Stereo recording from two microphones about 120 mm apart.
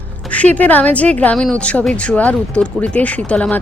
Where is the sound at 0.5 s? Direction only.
15° left (ahead or behind).